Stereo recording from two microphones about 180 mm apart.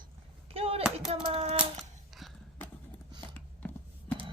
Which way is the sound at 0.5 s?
30° right (ahead or behind).